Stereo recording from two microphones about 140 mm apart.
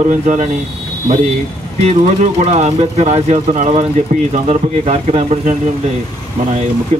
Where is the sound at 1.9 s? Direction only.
50° right (ahead or behind).